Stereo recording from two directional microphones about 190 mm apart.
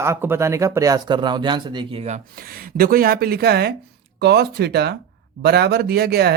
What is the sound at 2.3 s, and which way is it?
Speech, 50° right (ahead or behind).